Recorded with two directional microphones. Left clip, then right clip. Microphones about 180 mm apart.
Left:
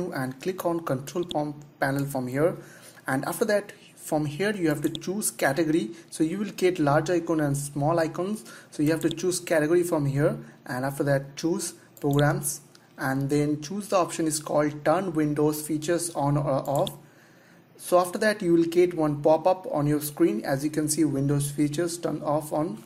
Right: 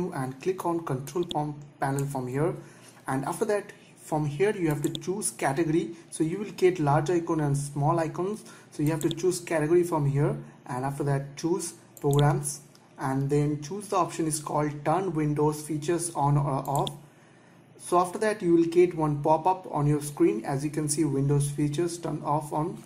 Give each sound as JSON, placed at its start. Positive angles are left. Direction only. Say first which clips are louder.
{"t": 0.1, "sound": "speech", "louder": "even", "side_deg": 30}